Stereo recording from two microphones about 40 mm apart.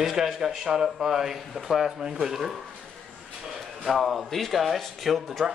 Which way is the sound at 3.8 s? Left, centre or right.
Centre.